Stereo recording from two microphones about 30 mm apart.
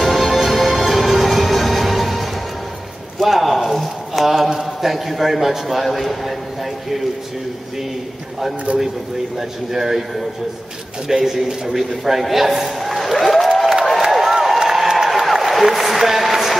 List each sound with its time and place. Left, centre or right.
0.0 s music: centre
3.2 s a sound: centre
4.6 s a man's voice: centre
8.7 s speech: right
9.4 s a man's voice: centre
11.1 s a man's voice: centre
14.2 s a sound: centre